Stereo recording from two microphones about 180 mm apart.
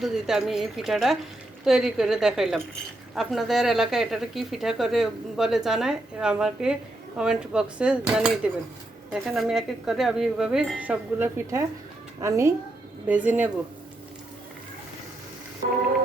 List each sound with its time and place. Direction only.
0.0 s speech: centre (ahead or behind)